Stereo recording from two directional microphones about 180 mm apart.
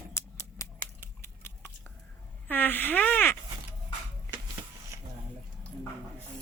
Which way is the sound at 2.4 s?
10° left (ahead or behind).